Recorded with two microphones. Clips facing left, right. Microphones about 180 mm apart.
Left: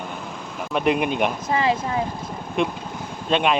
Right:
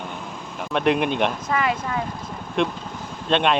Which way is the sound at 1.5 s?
25° left (ahead or behind).